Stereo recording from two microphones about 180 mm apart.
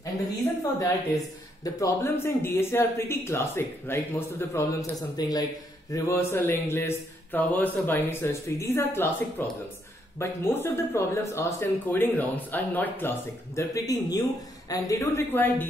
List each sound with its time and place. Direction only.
0.7 s a man's voice: 20° left (ahead or behind)